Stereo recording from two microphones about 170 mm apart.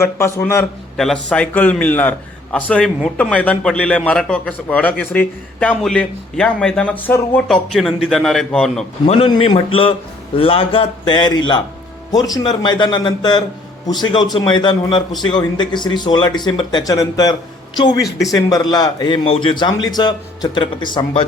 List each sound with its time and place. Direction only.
0.0 s a man's voice: 15° left (ahead or behind)
0.9 s a man's voice: 5° left (ahead or behind)
9.0 s a man's voice: 35° left (ahead or behind)